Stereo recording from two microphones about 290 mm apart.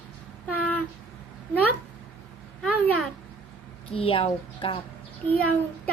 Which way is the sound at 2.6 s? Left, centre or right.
Centre.